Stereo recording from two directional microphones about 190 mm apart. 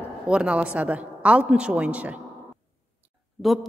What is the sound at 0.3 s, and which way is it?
A woman's voice, 5° right (ahead or behind).